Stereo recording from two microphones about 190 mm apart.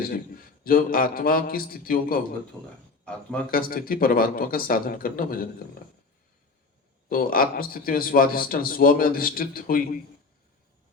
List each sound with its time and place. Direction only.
0.6 s a man's voice: 50° left (ahead or behind)
3.5 s a man's voice: 50° left (ahead or behind)
7.1 s a man's voice: 50° left (ahead or behind)